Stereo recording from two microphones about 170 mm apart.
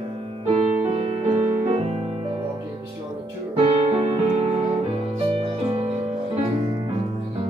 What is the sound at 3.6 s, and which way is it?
Music, 35° right (ahead or behind).